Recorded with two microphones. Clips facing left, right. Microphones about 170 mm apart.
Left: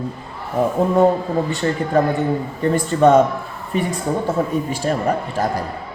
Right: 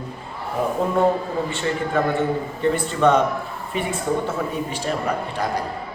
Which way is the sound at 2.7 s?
40° left (ahead or behind).